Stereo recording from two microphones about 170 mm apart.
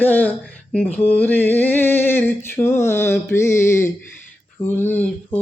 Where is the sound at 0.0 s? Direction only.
10° left (ahead or behind).